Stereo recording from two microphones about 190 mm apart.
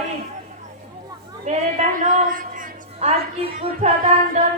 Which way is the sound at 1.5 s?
40° right (ahead or behind).